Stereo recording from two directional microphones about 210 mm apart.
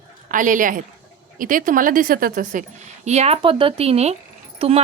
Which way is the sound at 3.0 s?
30° right (ahead or behind).